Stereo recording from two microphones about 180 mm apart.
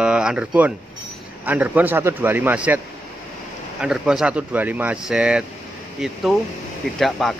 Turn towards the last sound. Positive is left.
turn(degrees=0)  # may be behind; listen again after turning